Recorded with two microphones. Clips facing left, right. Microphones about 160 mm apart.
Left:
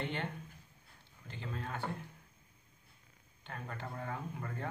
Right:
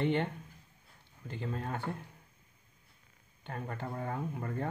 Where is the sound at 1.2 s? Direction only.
45° right (ahead or behind).